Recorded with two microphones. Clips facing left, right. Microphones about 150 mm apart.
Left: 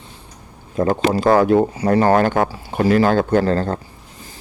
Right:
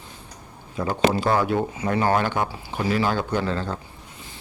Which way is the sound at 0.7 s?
45° left (ahead or behind).